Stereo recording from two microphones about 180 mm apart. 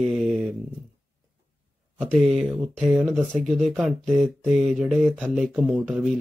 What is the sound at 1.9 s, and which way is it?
Speech, centre (ahead or behind).